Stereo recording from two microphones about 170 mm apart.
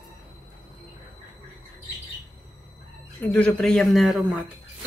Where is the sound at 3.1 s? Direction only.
10° left (ahead or behind).